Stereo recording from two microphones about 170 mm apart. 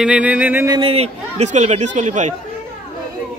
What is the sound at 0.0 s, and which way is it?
Speech, 5° right (ahead or behind).